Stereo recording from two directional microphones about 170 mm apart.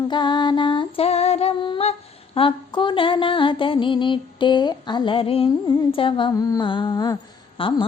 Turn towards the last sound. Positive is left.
turn(degrees=25)  # may be behind; listen again after turning